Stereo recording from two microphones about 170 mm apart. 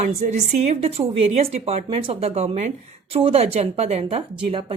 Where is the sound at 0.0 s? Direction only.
40° right (ahead or behind).